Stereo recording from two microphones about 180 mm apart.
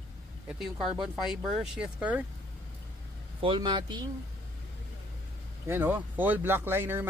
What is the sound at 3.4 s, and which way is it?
Speech, 25° right (ahead or behind).